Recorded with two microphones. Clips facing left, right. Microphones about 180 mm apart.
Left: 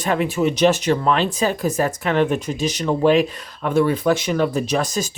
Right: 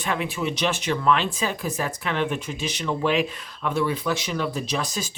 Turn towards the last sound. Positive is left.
turn(degrees=45)  # may be behind; listen again after turning